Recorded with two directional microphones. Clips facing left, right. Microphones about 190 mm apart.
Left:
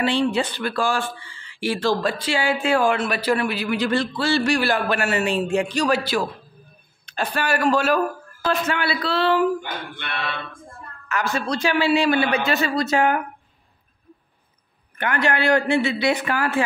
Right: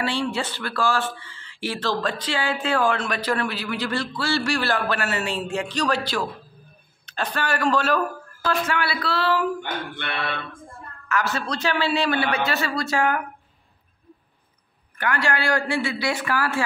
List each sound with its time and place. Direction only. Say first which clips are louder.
0.0 s speech: left 5 dB; 20° left (ahead or behind)
8.5 s a man's voice: left 2 dB; 25° left (ahead or behind)
11.1 s speech: left 1 dB; 15° left (ahead or behind)
15.0 s a man's voice: left 2 dB; 20° left (ahead or behind)